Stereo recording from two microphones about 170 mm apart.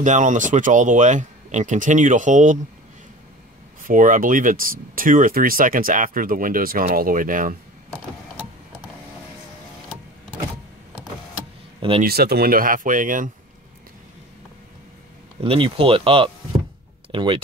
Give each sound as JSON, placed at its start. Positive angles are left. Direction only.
{"t": 0.0, "sound": "speech", "side_deg": -45}
{"t": 3.8, "sound": "speech", "side_deg": -50}
{"t": 12.0, "sound": "speech", "side_deg": -65}
{"t": 15.4, "sound": "speech", "side_deg": -30}